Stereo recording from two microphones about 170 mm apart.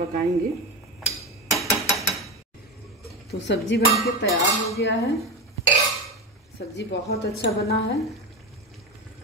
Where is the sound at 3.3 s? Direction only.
80° left.